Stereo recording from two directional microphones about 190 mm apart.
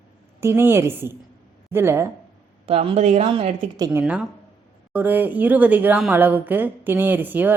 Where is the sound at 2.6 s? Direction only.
30° right (ahead or behind).